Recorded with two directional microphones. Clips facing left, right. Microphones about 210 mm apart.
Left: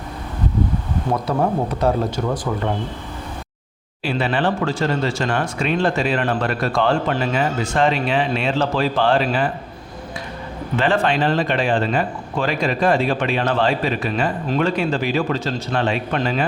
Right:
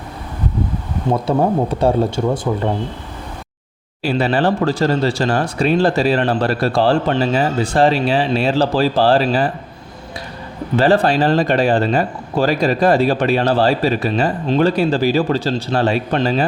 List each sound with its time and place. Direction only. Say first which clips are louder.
1.1 s speech: right 4 dB; 30° right (ahead or behind)
4.0 s speech: right 4 dB; 40° right (ahead or behind)
10.8 s speech: right 5 dB; 35° right (ahead or behind)